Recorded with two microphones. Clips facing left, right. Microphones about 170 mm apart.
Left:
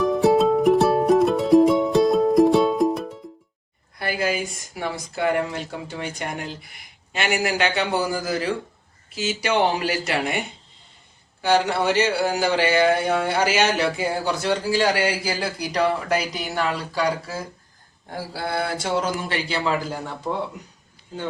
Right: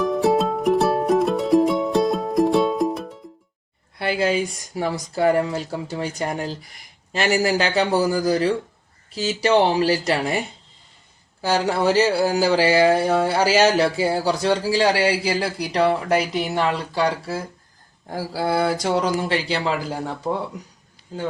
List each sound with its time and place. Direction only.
0.0 s music: centre (ahead or behind)
3.9 s speech: 25° right (ahead or behind)
11.4 s speech: 35° right (ahead or behind)
18.1 s speech: 40° right (ahead or behind)